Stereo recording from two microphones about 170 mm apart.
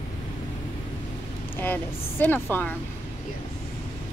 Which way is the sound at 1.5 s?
10° left (ahead or behind).